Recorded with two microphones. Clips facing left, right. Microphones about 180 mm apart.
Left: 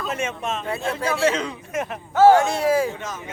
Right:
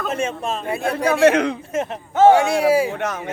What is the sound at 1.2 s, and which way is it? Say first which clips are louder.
Speech: right 8 dB; 65° right (ahead or behind).